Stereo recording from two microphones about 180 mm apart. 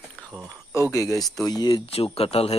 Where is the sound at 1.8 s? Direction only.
35° left (ahead or behind).